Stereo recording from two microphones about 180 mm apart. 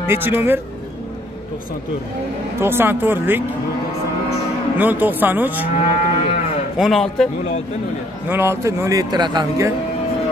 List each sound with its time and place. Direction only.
0.0 s speech: 10° right (ahead or behind)
2.6 s speech: 10° right (ahead or behind)
4.7 s speech: 10° right (ahead or behind)
5.8 s moo: 40° left (ahead or behind)
6.8 s a man's voice: centre (ahead or behind)
8.3 s speech: 15° right (ahead or behind)